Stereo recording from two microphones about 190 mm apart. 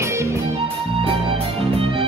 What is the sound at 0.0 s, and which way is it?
Music, 15° right (ahead or behind).